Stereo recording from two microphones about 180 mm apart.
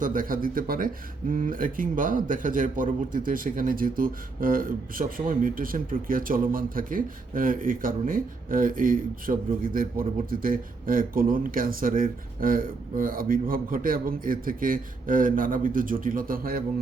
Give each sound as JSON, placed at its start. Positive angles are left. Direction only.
{"t": 0.0, "sound": "a man's voice", "side_deg": -50}